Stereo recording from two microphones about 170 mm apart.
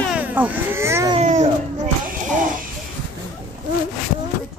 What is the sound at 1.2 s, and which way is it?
Speech, 40° right (ahead or behind).